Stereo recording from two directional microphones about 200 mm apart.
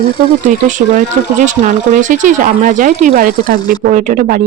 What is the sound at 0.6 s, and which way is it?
Speech, 40° right (ahead or behind).